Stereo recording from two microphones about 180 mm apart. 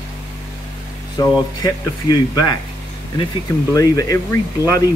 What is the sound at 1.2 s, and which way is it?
Speech, 20° left (ahead or behind).